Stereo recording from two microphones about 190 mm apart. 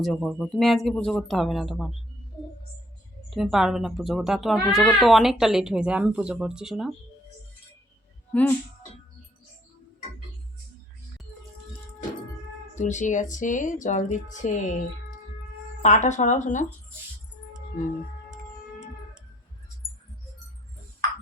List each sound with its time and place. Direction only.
0.0 s speech: centre (ahead or behind)
3.2 s speech: centre (ahead or behind)
8.3 s speech: 10° left (ahead or behind)
12.7 s speech: 40° left (ahead or behind)
15.8 s speech: 40° left (ahead or behind)